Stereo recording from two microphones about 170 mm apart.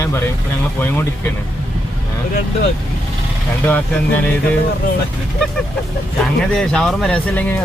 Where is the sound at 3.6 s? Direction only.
10° left (ahead or behind).